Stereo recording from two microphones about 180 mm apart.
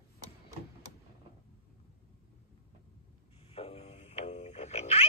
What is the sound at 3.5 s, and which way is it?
Music, 35° left (ahead or behind).